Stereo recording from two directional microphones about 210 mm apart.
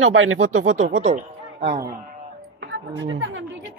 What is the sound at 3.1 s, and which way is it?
Speech, 70° right (ahead or behind).